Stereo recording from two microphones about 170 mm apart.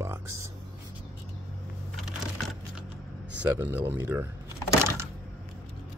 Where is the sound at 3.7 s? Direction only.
10° right (ahead or behind).